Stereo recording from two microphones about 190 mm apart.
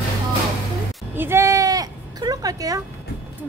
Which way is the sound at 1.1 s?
10° right (ahead or behind).